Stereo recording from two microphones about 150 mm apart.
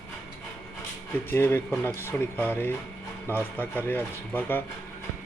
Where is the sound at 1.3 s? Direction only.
15° left (ahead or behind).